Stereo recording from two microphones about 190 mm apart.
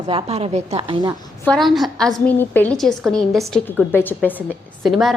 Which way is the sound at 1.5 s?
Centre (ahead or behind).